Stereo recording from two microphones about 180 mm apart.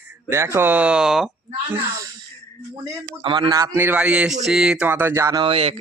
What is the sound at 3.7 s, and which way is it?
Speech, 10° right (ahead or behind).